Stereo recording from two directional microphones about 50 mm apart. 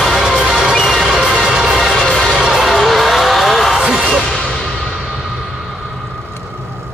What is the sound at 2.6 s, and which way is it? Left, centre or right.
Music, centre.